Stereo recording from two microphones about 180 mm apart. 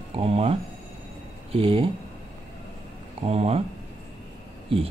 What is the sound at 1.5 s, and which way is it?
Speech, 30° right (ahead or behind).